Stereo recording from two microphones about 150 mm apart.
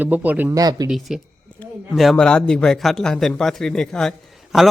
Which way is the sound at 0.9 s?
Centre (ahead or behind).